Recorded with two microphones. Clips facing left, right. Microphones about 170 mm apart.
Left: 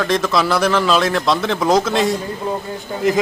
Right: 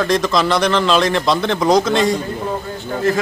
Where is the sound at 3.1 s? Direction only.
15° left (ahead or behind).